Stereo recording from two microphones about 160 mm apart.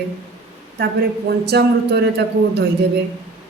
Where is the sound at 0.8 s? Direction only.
90° right.